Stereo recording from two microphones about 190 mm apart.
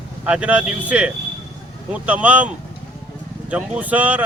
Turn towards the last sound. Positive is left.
turn(degrees=-10)  # may be behind; listen again after turning